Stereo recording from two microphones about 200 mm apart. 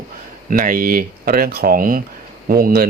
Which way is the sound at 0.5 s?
45° right (ahead or behind).